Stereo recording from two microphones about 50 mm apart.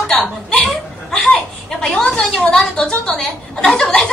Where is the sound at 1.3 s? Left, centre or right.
Centre.